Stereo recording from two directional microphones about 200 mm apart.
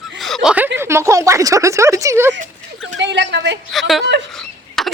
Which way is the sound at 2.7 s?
65° right (ahead or behind).